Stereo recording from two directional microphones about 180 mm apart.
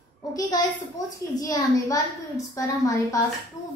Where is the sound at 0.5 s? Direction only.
20° left (ahead or behind).